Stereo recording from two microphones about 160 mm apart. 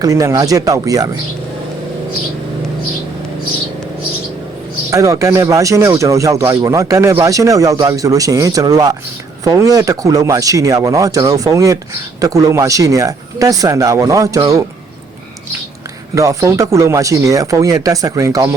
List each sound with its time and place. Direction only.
0.0 s speech: 20° right (ahead or behind)
4.9 s speech: 20° right (ahead or behind)
16.1 s speech: 20° right (ahead or behind)